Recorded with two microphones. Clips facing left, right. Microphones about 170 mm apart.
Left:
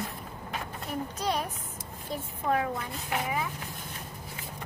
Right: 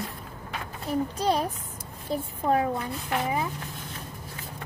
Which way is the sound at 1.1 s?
35° right (ahead or behind).